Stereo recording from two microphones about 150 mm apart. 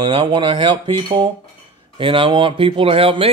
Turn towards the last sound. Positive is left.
turn(degrees=-40)  # may be behind; listen again after turning